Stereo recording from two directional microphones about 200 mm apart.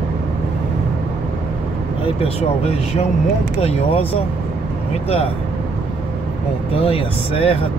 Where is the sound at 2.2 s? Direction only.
30° left (ahead or behind).